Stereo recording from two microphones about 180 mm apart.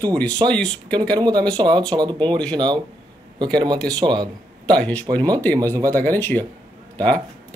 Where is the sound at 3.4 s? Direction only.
25° right (ahead or behind).